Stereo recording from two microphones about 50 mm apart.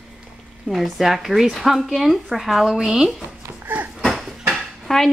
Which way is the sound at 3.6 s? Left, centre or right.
Right.